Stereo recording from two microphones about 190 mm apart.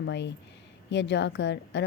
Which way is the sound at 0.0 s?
65° left (ahead or behind).